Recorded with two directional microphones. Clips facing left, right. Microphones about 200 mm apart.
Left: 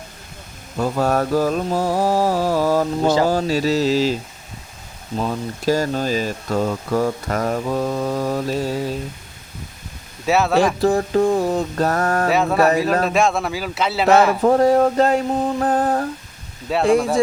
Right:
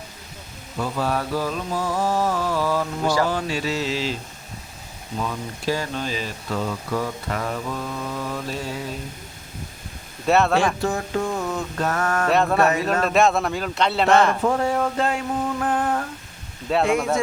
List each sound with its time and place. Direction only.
0.8 s speech: 45° left (ahead or behind)
5.1 s speech: 40° left (ahead or behind)
10.2 s a man's voice: centre (ahead or behind)
10.8 s speech: 35° left (ahead or behind)
12.3 s a man's voice: centre (ahead or behind)
14.4 s speech: 40° left (ahead or behind)
16.7 s a man's voice: centre (ahead or behind)